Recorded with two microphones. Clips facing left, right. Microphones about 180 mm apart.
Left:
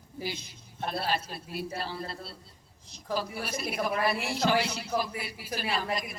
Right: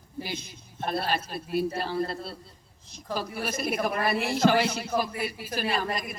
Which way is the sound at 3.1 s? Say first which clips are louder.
Right 2 dB; 50° right (ahead or behind).